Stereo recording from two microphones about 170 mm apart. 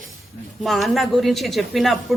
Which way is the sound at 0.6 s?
Centre (ahead or behind).